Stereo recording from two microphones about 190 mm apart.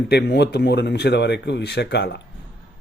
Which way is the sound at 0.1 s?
60° left (ahead or behind).